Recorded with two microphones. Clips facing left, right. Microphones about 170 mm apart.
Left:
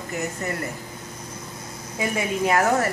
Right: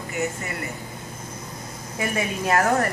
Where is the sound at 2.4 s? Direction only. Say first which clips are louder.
Even; 10° left (ahead or behind).